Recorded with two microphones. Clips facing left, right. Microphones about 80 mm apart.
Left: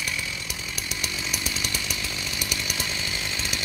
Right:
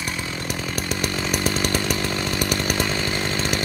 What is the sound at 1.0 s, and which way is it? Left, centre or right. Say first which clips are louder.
Chainsaw: right 9 dB; right.